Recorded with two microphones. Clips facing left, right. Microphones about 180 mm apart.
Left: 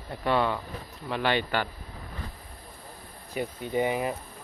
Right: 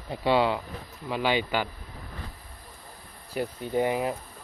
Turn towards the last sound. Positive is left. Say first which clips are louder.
# right 1 dB
turn(degrees=0)  # may be behind; listen again after turning